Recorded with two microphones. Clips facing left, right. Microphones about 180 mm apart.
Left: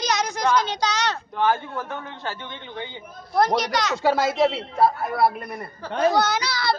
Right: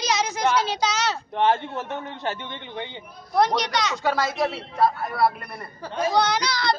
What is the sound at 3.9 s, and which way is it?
Speech, 25° left (ahead or behind).